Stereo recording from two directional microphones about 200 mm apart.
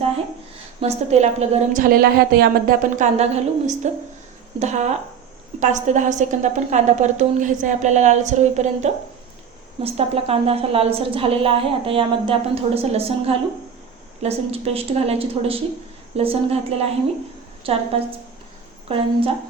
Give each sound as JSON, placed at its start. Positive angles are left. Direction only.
{"t": 0.8, "sound": "a woman's voice", "side_deg": -35}
{"t": 18.9, "sound": "a woman's voice", "side_deg": -25}